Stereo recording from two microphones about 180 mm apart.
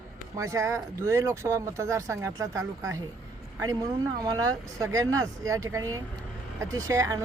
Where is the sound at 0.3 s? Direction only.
15° right (ahead or behind).